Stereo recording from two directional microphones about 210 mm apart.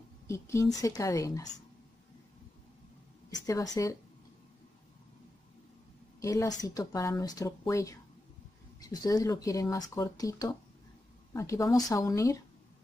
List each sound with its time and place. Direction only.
0.3 s speech: 15° left (ahead or behind)
3.3 s speech: 15° left (ahead or behind)
6.2 s speech: 15° left (ahead or behind)